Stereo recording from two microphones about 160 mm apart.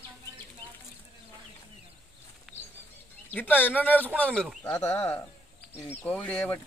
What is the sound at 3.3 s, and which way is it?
Speech, 10° left (ahead or behind).